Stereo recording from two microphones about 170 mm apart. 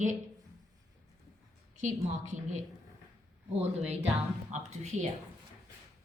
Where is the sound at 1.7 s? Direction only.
45° right (ahead or behind).